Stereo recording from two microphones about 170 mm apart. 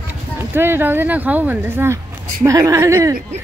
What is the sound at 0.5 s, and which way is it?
Speech, 15° right (ahead or behind).